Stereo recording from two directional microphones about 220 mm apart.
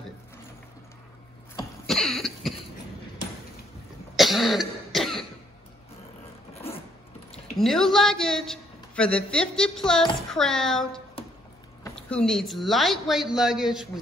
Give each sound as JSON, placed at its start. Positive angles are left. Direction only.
{"t": 1.9, "sound": "cough", "side_deg": 0}
{"t": 4.2, "sound": "cough", "side_deg": 0}
{"t": 7.5, "sound": "a woman's voice", "side_deg": 0}
{"t": 11.2, "sound": "music", "side_deg": 25}
{"t": 11.9, "sound": "a woman's voice", "side_deg": 5}